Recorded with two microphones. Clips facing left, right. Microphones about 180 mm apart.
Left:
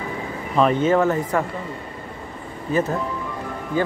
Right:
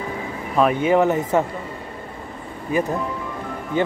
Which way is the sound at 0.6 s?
10° right (ahead or behind).